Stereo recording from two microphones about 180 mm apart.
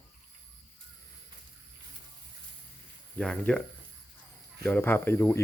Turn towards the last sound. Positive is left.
turn(degrees=15)  # may be behind; listen again after turning